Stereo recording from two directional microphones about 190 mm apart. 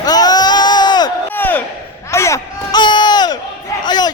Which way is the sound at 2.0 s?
15° left (ahead or behind).